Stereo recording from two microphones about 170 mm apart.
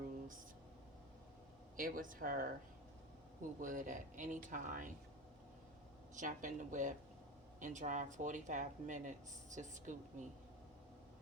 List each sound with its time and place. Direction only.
1.7 s speech: 55° right (ahead or behind)
3.6 s speech: 50° right (ahead or behind)
6.1 s speech: 50° right (ahead or behind)